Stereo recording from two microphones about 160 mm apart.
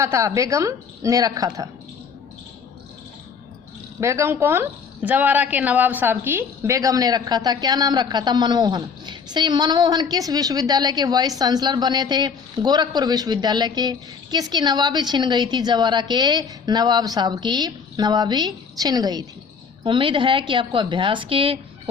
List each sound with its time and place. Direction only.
0.0 s a woman's voice: 20° right (ahead or behind)
4.0 s a woman's voice: 20° right (ahead or behind); by 21.6 s 35° right (ahead or behind)